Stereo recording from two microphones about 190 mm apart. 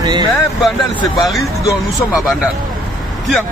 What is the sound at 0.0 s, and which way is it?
Speech, 20° right (ahead or behind).